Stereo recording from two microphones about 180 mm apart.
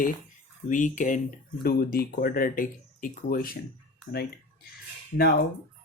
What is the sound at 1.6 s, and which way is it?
Speech, 55° left (ahead or behind).